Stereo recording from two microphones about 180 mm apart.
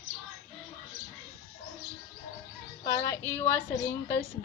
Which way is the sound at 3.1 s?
10° left (ahead or behind).